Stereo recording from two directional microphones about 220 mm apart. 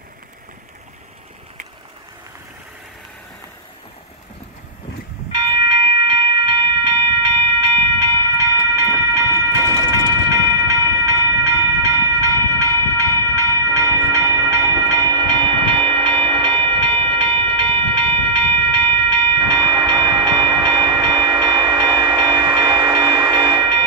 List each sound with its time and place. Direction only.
5.3 s train: 20° right (ahead or behind)